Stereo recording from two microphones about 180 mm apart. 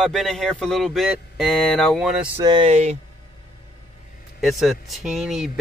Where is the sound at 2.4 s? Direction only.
25° right (ahead or behind).